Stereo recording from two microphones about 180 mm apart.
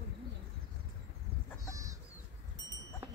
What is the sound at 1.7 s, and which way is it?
Chicken, 20° right (ahead or behind).